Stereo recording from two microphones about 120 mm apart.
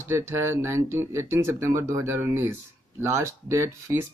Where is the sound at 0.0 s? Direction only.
20° right (ahead or behind).